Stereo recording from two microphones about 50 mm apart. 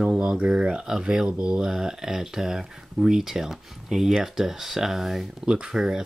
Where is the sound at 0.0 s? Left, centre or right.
Centre.